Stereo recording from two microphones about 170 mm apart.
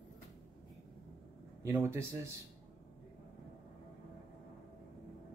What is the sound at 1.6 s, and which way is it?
Speech, 15° right (ahead or behind).